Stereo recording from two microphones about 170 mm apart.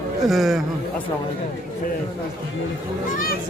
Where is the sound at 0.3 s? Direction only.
Centre (ahead or behind).